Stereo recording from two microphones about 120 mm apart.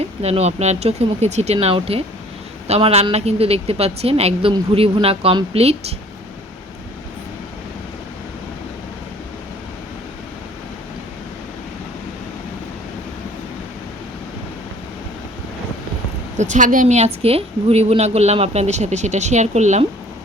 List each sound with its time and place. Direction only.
0.0 s a woman's voice: 60° right (ahead or behind)
1.5 s a woman's voice: 50° right (ahead or behind)
16.4 s a woman's voice: 90° right; by 19.8 s 75° right (ahead or behind)